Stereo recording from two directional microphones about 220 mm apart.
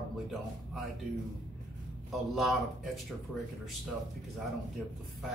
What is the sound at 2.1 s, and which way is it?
Speech, centre (ahead or behind).